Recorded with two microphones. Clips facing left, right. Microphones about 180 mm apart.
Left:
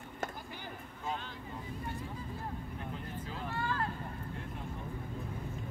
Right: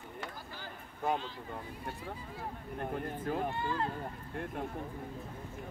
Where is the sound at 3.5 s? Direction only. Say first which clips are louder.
Right 1 dB; 20° right (ahead or behind).